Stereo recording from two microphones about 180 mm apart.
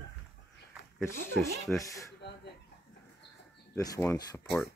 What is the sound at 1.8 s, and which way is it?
Speech, 20° left (ahead or behind).